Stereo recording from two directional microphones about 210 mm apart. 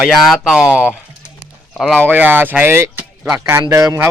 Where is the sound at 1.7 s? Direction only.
Centre (ahead or behind).